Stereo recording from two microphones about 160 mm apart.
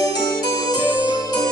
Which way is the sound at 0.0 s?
25° left (ahead or behind).